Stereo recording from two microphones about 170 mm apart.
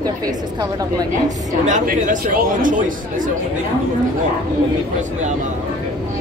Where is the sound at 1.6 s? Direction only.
50° right (ahead or behind).